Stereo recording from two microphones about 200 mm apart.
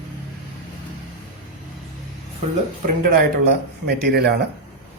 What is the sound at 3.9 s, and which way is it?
Speech, 55° right (ahead or behind).